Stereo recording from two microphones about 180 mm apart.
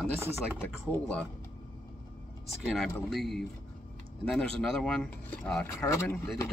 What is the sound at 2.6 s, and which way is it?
Speech, centre (ahead or behind).